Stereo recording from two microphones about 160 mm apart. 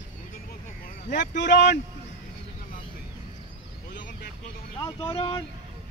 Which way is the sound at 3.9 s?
55° left (ahead or behind).